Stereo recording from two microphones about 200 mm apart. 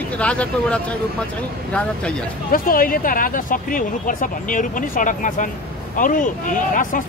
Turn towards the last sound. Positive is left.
turn(degrees=40)  # may be behind; listen again after turning